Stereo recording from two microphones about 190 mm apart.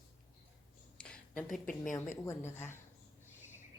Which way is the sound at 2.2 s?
15° left (ahead or behind).